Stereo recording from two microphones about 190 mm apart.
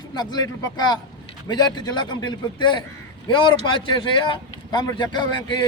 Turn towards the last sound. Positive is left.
turn(degrees=25)  # may be behind; listen again after turning